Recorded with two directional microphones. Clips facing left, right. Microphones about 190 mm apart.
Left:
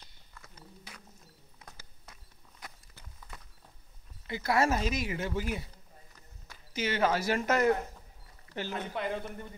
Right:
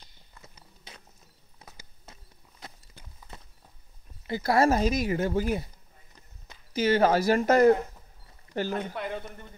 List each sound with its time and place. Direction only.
0.9 s vehicle: 20° right (ahead or behind)
2.1 s a sound: 25° right (ahead or behind)
2.6 s walk: 15° right (ahead or behind)
4.3 s speech: 35° right (ahead or behind)
6.1 s clip-clop: 20° right (ahead or behind)
6.7 s speech: 35° right (ahead or behind)
8.9 s a man's voice: centre (ahead or behind)